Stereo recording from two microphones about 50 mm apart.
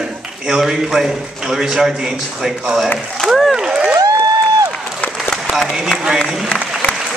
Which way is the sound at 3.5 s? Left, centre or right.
Centre.